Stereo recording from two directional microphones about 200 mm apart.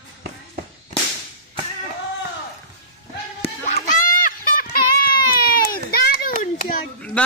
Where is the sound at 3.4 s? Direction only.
35° left (ahead or behind).